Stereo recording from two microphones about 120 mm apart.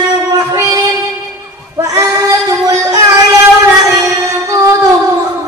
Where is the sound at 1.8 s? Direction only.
30° right (ahead or behind).